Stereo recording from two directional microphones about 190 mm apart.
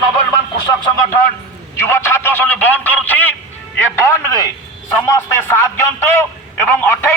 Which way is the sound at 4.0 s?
15° left (ahead or behind).